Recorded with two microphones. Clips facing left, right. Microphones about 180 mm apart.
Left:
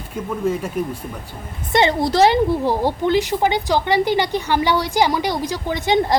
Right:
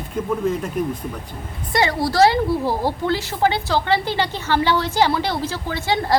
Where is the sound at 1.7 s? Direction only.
20° left (ahead or behind).